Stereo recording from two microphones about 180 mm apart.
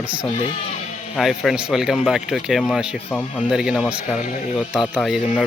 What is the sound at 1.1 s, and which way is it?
Speech, centre (ahead or behind).